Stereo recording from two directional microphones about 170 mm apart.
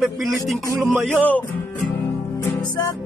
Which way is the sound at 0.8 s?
5° right (ahead or behind).